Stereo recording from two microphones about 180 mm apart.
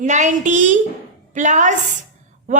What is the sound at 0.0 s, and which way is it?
A woman's voice, 40° right (ahead or behind).